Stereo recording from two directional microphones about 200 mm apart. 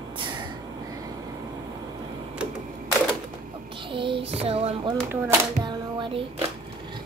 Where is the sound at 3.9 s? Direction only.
25° right (ahead or behind).